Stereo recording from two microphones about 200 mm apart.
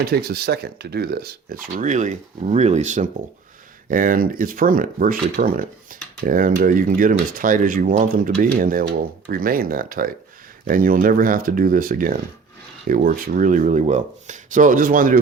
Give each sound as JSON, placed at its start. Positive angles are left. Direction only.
{"t": 0.0, "sound": "speech", "side_deg": -50}